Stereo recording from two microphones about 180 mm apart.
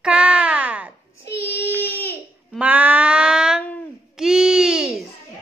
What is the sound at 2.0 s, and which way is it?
Babbling, 10° left (ahead or behind).